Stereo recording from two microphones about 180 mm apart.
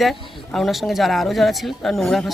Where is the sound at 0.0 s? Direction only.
Centre (ahead or behind).